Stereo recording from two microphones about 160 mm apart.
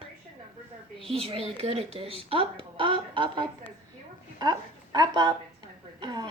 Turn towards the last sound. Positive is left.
turn(degrees=-25)  # may be behind; listen again after turning